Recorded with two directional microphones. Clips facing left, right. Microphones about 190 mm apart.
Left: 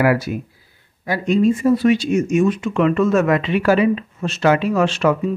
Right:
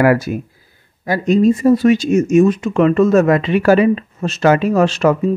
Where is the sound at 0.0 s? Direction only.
45° right (ahead or behind).